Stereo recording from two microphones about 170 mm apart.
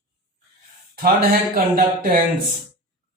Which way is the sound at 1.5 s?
60° right (ahead or behind).